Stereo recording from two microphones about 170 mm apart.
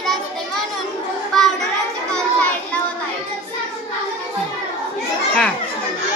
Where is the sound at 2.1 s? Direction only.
5° left (ahead or behind).